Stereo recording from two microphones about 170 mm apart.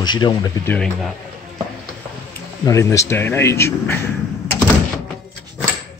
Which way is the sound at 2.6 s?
20° left (ahead or behind).